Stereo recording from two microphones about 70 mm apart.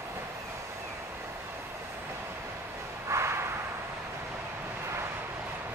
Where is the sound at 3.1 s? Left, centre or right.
Right.